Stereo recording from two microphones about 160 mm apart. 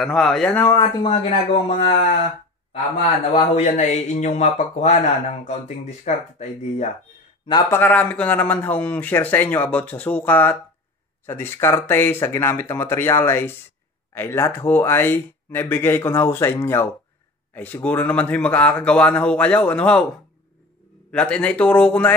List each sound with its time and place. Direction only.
0.0 s speech: 5° left (ahead or behind)
1.0 s speech: 40° left (ahead or behind)
3.3 s speech: 50° left (ahead or behind)
7.7 s speech: 10° left (ahead or behind)
21.1 s speech: 5° left (ahead or behind)